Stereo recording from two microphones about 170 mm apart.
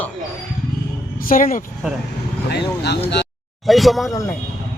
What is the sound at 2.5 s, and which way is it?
Speech, 75° left (ahead or behind).